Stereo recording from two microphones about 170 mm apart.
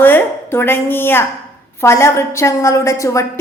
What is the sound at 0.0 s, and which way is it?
A woman's voice, 10° left (ahead or behind).